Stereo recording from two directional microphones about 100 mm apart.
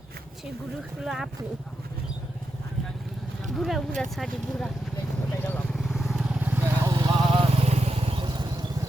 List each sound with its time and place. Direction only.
1.0 s speech: 5° right (ahead or behind)
3.4 s speech: centre (ahead or behind)
5.4 s vehicle: 20° left (ahead or behind)
5.7 s vehicle: centre (ahead or behind)
6.8 s vehicle: 35° right (ahead or behind)
7.1 s vehicle: 50° right (ahead or behind)
7.5 s vehicle: 90° right; by 8.4 s 50° right (ahead or behind)